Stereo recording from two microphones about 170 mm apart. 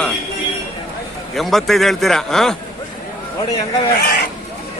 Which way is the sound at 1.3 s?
Centre (ahead or behind).